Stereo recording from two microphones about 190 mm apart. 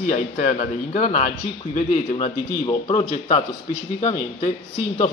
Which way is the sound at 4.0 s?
40° left (ahead or behind).